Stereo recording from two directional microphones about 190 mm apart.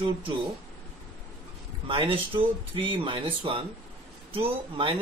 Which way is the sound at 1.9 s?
25° right (ahead or behind).